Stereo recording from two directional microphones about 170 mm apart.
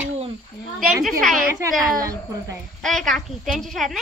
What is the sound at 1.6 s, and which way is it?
Speech, 20° right (ahead or behind).